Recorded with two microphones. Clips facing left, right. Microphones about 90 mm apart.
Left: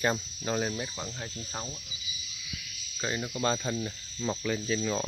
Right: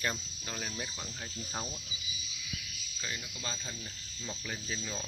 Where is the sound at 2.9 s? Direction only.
50° left (ahead or behind); by 4.9 s 90° left.